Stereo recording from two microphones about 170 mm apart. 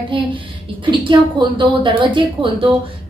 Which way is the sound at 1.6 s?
30° right (ahead or behind).